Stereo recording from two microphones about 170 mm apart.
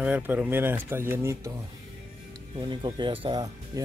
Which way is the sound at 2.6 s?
25° right (ahead or behind).